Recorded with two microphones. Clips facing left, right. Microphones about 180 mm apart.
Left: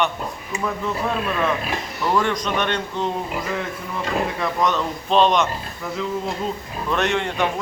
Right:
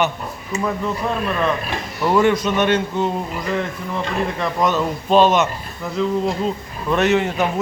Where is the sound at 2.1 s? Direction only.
5° right (ahead or behind).